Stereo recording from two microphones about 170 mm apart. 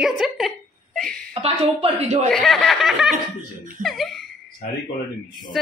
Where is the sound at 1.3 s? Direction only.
35° right (ahead or behind).